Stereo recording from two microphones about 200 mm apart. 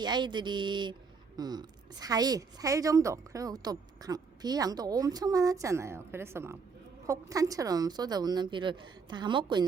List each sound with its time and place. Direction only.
0.0 s a woman's voice: 20° right (ahead or behind)